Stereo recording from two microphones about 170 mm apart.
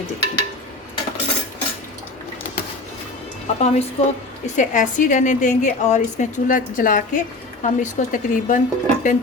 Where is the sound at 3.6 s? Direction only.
40° left (ahead or behind).